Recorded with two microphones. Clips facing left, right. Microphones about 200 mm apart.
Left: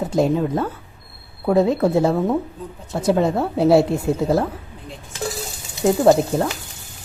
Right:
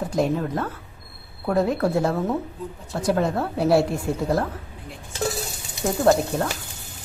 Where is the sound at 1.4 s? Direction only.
25° left (ahead or behind).